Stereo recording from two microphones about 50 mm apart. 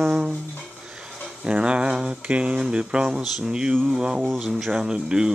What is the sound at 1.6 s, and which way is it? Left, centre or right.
Speech, right.